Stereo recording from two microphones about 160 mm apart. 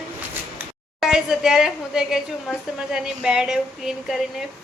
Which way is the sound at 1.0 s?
5° right (ahead or behind).